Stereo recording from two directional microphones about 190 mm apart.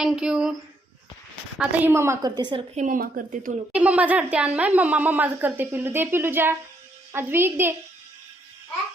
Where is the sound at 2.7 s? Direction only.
40° right (ahead or behind).